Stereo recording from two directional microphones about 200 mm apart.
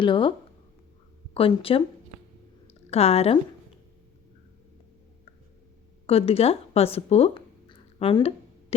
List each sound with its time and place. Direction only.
0.0 s speech: 25° left (ahead or behind)
2.6 s a sound: 30° left (ahead or behind)
6.1 s speech: 30° left (ahead or behind)